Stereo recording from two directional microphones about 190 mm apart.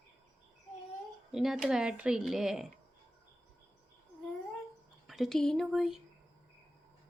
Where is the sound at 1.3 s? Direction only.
Centre (ahead or behind).